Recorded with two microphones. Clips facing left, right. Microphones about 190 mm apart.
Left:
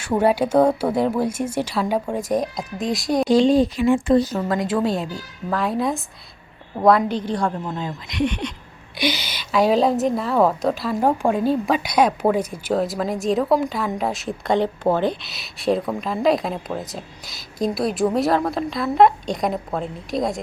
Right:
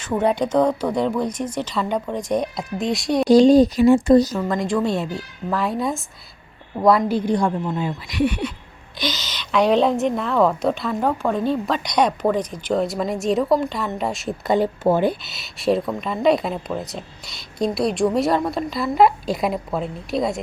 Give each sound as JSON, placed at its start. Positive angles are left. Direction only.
{"t": 0.0, "sound": "a woman's voice", "side_deg": 5}
{"t": 3.2, "sound": "speech", "side_deg": -40}
{"t": 4.4, "sound": "a woman's voice", "side_deg": 5}
{"t": 9.0, "sound": "a woman's voice", "side_deg": 10}